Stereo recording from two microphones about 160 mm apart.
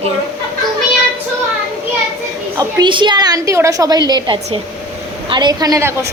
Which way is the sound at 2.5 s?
30° right (ahead or behind).